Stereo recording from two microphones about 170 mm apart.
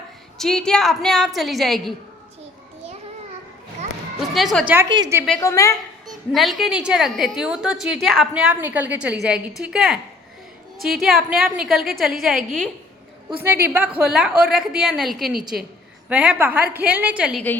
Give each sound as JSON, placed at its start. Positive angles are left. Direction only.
{"t": 0.3, "sound": "a woman's voice", "side_deg": 5}
{"t": 4.4, "sound": "a woman's voice", "side_deg": 0}
{"t": 5.4, "sound": "a woman's voice", "side_deg": 15}
{"t": 6.1, "sound": "a woman's voice", "side_deg": 0}
{"t": 13.4, "sound": "a woman's voice", "side_deg": -15}